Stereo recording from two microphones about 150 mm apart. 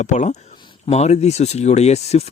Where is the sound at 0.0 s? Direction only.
50° left (ahead or behind).